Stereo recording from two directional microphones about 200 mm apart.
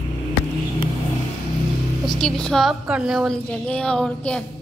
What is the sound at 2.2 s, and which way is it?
A woman's voice, 5° left (ahead or behind).